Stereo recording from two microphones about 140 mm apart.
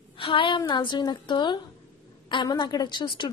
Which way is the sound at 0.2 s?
35° left (ahead or behind).